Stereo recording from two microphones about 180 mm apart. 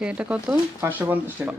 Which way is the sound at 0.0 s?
5° right (ahead or behind).